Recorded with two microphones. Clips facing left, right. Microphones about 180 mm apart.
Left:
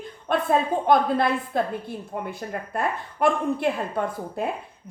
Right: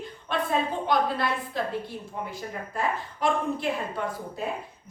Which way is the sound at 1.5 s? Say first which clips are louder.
Left 4 dB; 55° left (ahead or behind).